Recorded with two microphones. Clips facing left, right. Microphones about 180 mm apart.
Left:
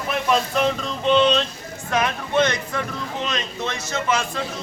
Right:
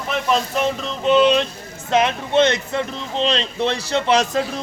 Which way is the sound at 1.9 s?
25° right (ahead or behind).